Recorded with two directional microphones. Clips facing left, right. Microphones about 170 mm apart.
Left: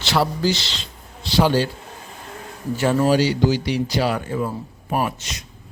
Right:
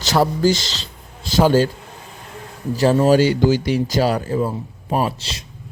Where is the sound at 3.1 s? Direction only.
50° right (ahead or behind); by 5.5 s 30° right (ahead or behind).